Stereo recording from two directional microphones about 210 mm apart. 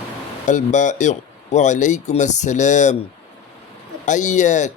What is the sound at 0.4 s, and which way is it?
Speech, 35° left (ahead or behind).